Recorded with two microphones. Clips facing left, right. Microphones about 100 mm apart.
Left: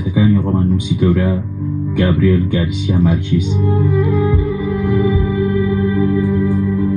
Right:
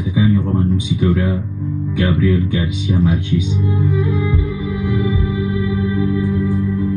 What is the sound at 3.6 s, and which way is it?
Music, 50° left (ahead or behind).